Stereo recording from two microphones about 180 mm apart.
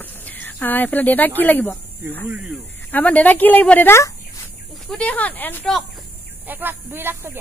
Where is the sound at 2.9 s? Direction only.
10° left (ahead or behind).